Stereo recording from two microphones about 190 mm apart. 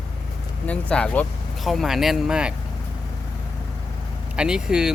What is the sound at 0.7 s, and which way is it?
Speech, 5° left (ahead or behind).